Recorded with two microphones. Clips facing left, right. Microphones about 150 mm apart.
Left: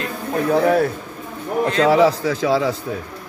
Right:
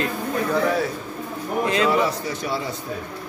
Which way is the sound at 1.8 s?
90° left.